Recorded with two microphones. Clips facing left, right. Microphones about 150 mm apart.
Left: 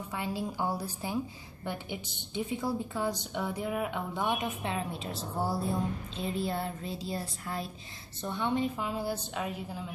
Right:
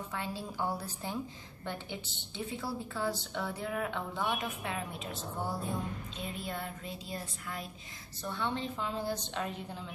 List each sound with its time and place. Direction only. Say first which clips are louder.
0.1 s a woman's voice: left 7 dB; 15° left (ahead or behind); by 7.7 s 30° left (ahead or behind)
8.2 s a woman's voice: left 5 dB; 15° left (ahead or behind)